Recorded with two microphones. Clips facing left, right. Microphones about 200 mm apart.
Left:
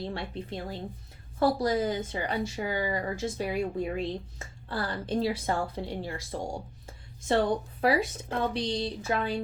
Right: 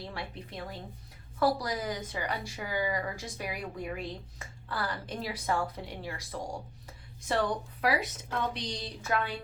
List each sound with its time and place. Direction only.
0.0 s a woman's voice: 25° left (ahead or behind)